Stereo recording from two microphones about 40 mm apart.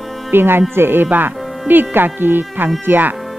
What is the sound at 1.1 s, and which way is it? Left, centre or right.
Speech, right.